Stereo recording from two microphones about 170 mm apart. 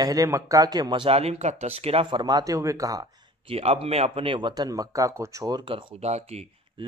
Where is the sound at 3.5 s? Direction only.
35° right (ahead or behind).